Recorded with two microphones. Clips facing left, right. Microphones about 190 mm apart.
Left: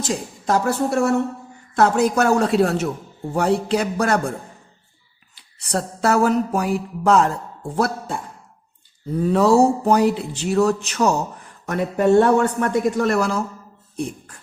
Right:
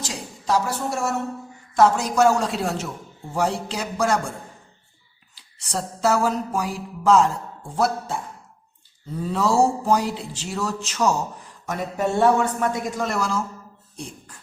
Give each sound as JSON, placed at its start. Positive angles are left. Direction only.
{"t": 0.0, "sound": "speech", "side_deg": 50}
{"t": 9.2, "sound": "speech", "side_deg": 60}